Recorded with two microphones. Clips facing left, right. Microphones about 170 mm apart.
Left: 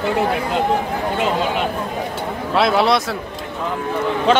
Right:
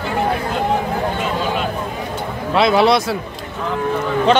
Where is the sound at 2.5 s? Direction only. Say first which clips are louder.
Right 2 dB; centre (ahead or behind).